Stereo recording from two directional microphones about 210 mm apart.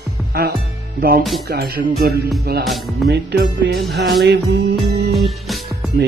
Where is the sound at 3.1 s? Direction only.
50° right (ahead or behind).